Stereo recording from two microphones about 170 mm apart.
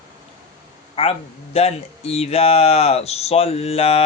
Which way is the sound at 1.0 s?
35° left (ahead or behind).